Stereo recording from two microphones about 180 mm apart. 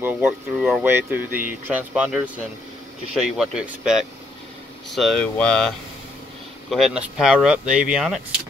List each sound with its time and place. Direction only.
0.0 s speech: 5° right (ahead or behind)
3.3 s speech: 5° right (ahead or behind)
6.7 s speech: 5° right (ahead or behind)